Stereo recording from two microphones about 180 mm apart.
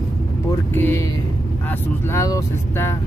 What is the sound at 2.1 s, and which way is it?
Speech, 20° left (ahead or behind).